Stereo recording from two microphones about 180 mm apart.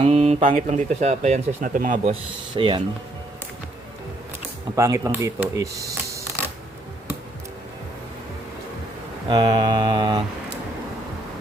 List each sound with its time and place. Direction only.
0.0 s speech: 35° right (ahead or behind)
2.6 s mantra: 30° right (ahead or behind)
4.7 s speech: 15° right (ahead or behind)
9.3 s mantra: 25° right (ahead or behind)